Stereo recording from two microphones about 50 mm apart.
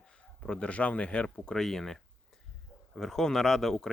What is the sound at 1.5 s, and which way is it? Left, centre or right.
Speech, centre.